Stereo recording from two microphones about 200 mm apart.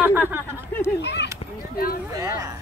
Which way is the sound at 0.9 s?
55° left (ahead or behind).